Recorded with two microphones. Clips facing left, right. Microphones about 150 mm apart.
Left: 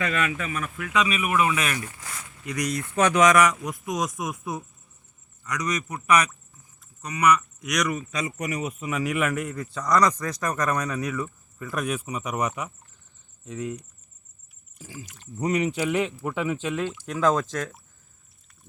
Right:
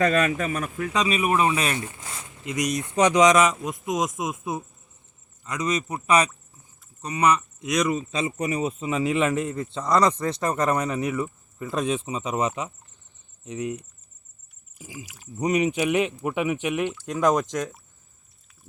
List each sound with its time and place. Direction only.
0.0 s speech: 40° right (ahead or behind); by 12.7 s 25° right (ahead or behind)
13.4 s cricket: 20° right (ahead or behind)
14.8 s speech: 10° right (ahead or behind)
15.4 s speech: 20° right (ahead or behind)